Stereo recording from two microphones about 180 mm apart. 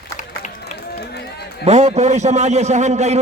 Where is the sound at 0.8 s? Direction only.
60° left (ahead or behind).